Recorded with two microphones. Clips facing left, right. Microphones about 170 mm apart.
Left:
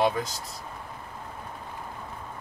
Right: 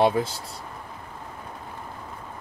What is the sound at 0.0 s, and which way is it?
Speech, 30° right (ahead or behind).